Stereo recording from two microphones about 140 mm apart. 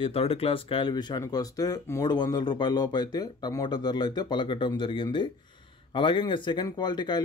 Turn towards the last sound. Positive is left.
turn(degrees=30)  # may be behind; listen again after turning